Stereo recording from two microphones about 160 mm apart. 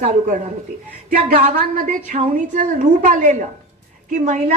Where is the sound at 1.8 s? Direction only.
50° right (ahead or behind).